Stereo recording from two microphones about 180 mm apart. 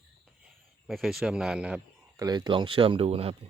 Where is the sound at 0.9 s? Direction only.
Centre (ahead or behind).